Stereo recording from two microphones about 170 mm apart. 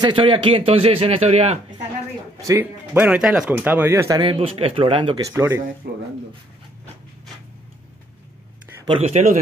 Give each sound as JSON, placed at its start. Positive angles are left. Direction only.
{"t": 0.0, "sound": "a man's voice", "side_deg": -30}
{"t": 2.4, "sound": "speech", "side_deg": -15}
{"t": 4.2, "sound": "speech", "side_deg": -30}
{"t": 5.8, "sound": "speech", "side_deg": -65}
{"t": 9.0, "sound": "a man's voice", "side_deg": -45}